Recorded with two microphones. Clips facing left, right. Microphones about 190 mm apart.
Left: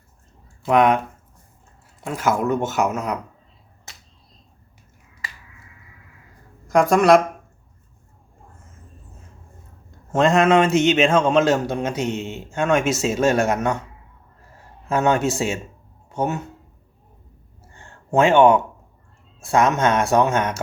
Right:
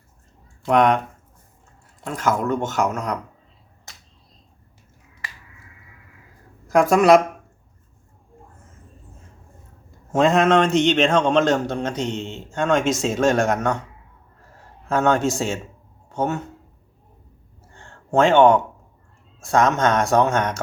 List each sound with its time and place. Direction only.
0.6 s speech: 5° left (ahead or behind)
2.0 s a man's voice: 10° left (ahead or behind)
6.7 s speech: centre (ahead or behind)
10.1 s a man's voice: centre (ahead or behind)
14.8 s a man's voice: 10° left (ahead or behind)
17.7 s a sound: 10° left (ahead or behind)
19.4 s a man's voice: 10° left (ahead or behind)